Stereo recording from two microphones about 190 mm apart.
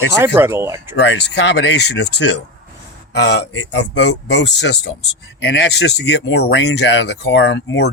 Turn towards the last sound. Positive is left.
turn(degrees=65)  # may be behind; listen again after turning